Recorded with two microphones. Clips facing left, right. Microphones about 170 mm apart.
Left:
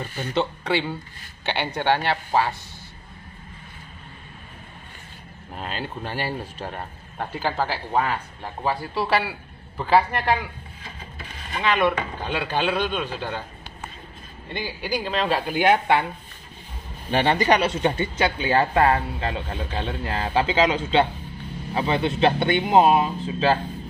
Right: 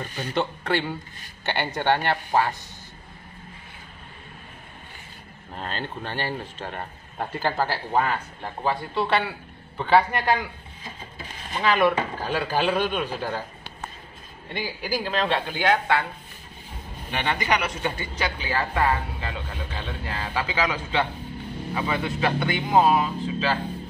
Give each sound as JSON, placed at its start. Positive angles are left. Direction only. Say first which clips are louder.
{"t": 0.3, "sound": "speech", "louder": "left 1 dB", "side_deg": 0}
{"t": 5.6, "sound": "speech", "louder": "left 1 dB", "side_deg": 10}
{"t": 11.5, "sound": "speech", "louder": "right 1 dB", "side_deg": -5}
{"t": 14.5, "sound": "speech", "louder": "left 1 dB", "side_deg": -5}
{"t": 17.1, "sound": "speech", "louder": "left 6 dB", "side_deg": 35}